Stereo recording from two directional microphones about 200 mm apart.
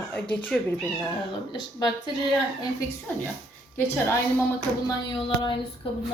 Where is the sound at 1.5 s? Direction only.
20° left (ahead or behind).